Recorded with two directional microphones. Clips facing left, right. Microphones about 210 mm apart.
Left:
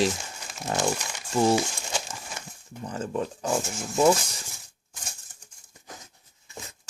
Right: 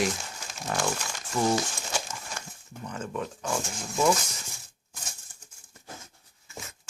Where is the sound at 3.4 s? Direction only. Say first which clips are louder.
Left 4 dB; 20° left (ahead or behind).